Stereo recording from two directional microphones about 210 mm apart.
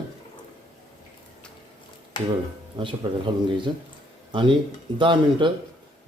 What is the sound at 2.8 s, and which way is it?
Speech, 25° right (ahead or behind).